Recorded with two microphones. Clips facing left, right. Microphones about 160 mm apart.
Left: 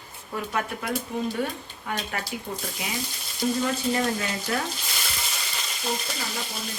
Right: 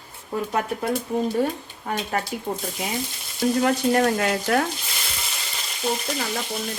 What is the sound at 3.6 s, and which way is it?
Frying, 55° right (ahead or behind).